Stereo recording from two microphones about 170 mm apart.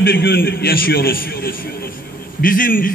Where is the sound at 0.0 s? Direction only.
65° left (ahead or behind).